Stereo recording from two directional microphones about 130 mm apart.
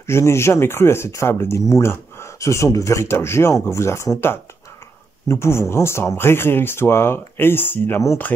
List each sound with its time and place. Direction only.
0.0 s speech: 20° left (ahead or behind)